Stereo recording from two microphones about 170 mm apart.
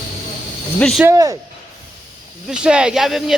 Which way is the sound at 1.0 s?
20° right (ahead or behind).